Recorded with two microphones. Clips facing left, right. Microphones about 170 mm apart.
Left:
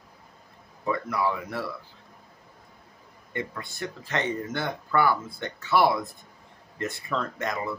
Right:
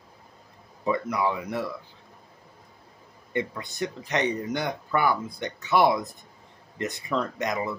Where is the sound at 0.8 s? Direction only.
20° right (ahead or behind).